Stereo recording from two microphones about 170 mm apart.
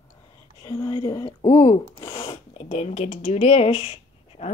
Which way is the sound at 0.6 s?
20° left (ahead or behind).